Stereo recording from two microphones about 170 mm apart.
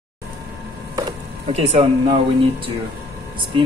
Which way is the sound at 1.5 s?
40° right (ahead or behind).